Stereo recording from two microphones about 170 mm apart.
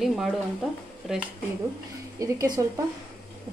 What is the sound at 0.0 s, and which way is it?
Speech, centre (ahead or behind).